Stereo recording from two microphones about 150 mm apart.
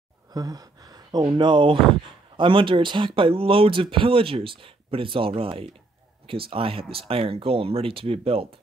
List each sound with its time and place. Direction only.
0.3 s speech: 25° right (ahead or behind); by 8.5 s 40° right (ahead or behind)